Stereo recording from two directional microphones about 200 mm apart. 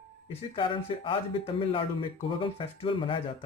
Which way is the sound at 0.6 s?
25° left (ahead or behind).